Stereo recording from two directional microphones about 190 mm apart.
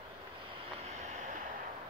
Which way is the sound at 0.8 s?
40° right (ahead or behind).